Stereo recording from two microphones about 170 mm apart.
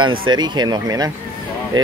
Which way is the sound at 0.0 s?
25° right (ahead or behind).